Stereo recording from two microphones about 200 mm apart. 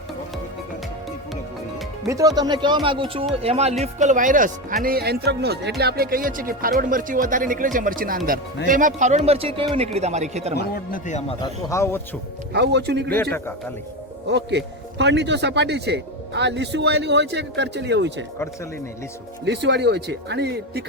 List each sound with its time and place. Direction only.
2.0 s speech: 15° right (ahead or behind); by 10.5 s 35° right (ahead or behind)
10.5 s a man's voice: 50° left (ahead or behind)
11.3 s speech: 15° left (ahead or behind)
12.5 s a man's voice: 55° right (ahead or behind)
14.3 s a man's voice: 60° right (ahead or behind)
19.5 s a man's voice: 60° right (ahead or behind)